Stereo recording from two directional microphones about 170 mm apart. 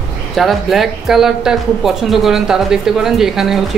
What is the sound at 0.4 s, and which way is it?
Speech, centre (ahead or behind).